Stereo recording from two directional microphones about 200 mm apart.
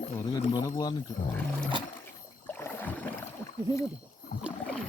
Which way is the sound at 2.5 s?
10° left (ahead or behind).